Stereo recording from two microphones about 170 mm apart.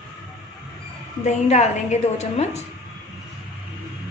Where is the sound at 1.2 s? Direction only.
40° left (ahead or behind).